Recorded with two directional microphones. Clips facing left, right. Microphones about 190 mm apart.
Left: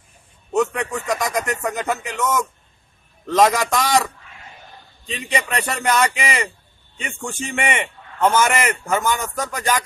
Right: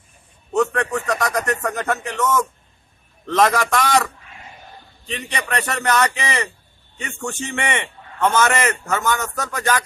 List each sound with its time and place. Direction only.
0.5 s a sound: 10° left (ahead or behind)
1.6 s a man's voice: 10° left (ahead or behind)
3.3 s a man's voice: 10° left (ahead or behind)
5.3 s speech: 25° left (ahead or behind)
5.7 s a man's voice: 10° left (ahead or behind)